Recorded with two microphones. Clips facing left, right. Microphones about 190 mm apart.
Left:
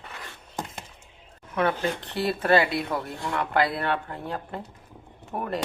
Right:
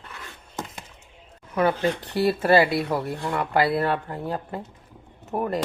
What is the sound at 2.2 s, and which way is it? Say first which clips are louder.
A woman's voice: right 3 dB; 10° right (ahead or behind).